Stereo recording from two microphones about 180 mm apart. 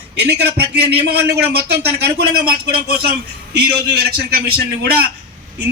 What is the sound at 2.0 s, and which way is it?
A man's voice, 60° right (ahead or behind).